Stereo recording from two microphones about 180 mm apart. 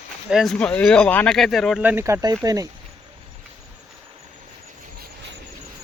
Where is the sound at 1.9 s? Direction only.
15° right (ahead or behind).